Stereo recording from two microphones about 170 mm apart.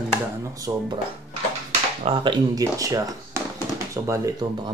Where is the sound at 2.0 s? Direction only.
30° right (ahead or behind).